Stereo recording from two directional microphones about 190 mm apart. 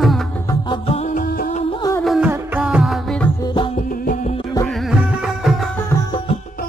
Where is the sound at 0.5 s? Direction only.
25° left (ahead or behind); by 1.6 s 50° left (ahead or behind).